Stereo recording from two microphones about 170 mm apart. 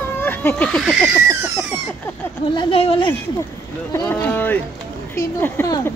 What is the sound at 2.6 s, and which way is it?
Speech, 35° left (ahead or behind).